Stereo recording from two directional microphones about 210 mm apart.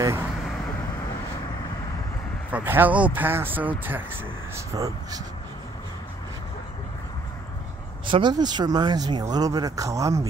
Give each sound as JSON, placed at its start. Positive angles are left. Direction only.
{"t": 2.5, "sound": "speech", "side_deg": -10}
{"t": 8.1, "sound": "speech", "side_deg": -20}